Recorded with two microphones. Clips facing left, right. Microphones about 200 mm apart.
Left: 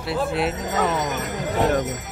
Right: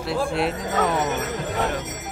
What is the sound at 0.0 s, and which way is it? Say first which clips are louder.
Speech: even; centre (ahead or behind).